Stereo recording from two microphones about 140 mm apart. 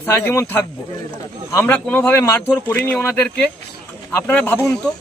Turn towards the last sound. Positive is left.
turn(degrees=15)  # may be behind; listen again after turning